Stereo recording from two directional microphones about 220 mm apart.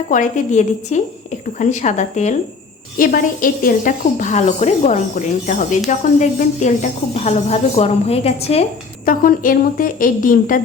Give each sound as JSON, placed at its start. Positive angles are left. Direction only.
{"t": 0.1, "sound": "a woman's voice", "side_deg": 35}
{"t": 9.0, "sound": "a woman's voice", "side_deg": 40}